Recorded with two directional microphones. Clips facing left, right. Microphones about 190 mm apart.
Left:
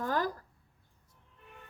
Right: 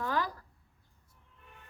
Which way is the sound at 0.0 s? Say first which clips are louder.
Left 1 dB; 45° left (ahead or behind).